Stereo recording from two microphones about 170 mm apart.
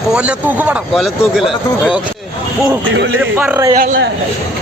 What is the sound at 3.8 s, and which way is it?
Speech, 60° right (ahead or behind).